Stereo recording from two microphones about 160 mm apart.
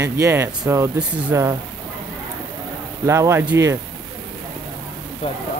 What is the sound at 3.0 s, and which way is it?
Speech, 15° right (ahead or behind).